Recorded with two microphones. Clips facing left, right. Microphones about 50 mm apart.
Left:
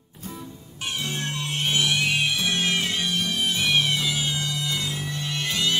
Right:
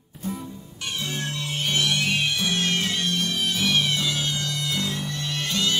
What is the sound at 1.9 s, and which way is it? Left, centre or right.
Music, centre.